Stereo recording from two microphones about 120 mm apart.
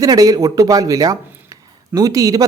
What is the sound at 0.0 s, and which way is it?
Speech, 30° right (ahead or behind).